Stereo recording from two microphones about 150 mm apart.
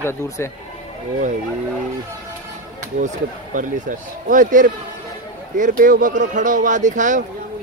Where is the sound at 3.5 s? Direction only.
60° right (ahead or behind).